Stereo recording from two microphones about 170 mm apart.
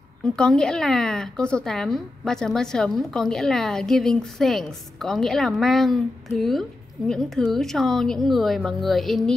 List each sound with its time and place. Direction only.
0.2 s a woman's voice: 5° left (ahead or behind)